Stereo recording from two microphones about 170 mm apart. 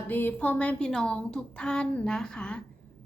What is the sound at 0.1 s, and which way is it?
A woman's voice, 10° left (ahead or behind).